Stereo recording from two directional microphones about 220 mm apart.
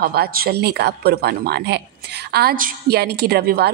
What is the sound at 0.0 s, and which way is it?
A woman's voice, 45° right (ahead or behind).